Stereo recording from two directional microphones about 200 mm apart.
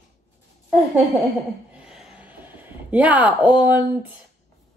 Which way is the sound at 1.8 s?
Centre (ahead or behind).